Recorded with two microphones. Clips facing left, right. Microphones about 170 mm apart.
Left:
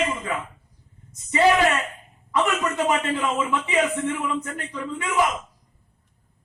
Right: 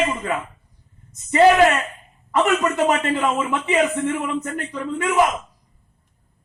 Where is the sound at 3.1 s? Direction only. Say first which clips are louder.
Right 3 dB; 55° right (ahead or behind).